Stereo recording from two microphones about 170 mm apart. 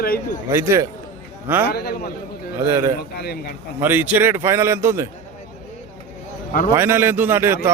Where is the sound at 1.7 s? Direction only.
65° left (ahead or behind).